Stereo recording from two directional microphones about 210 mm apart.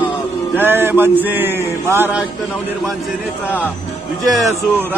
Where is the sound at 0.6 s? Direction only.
10° right (ahead or behind).